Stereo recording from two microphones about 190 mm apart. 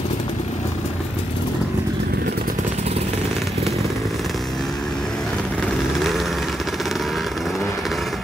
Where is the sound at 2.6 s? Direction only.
35° right (ahead or behind).